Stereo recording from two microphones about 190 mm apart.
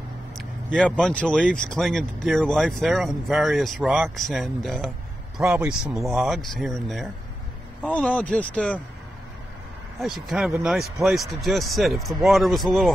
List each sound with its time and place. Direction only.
0.4 s vehicle: 5° right (ahead or behind)
0.8 s speech: 5° left (ahead or behind)
9.9 s speech: centre (ahead or behind)